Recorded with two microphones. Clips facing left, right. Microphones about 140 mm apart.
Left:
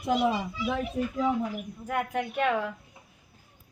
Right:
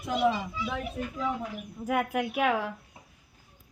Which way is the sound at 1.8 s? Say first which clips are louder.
Right 2 dB; 5° right (ahead or behind).